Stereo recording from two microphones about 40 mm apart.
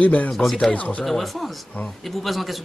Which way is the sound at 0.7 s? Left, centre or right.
Left.